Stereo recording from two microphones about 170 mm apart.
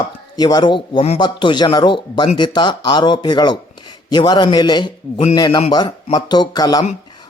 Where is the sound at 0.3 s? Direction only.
25° left (ahead or behind).